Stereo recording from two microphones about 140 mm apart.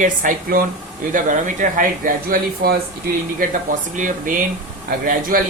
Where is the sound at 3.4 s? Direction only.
65° right (ahead or behind).